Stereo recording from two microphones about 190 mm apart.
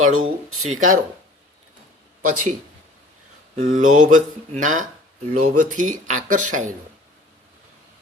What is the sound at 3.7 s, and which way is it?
Speech, 40° right (ahead or behind).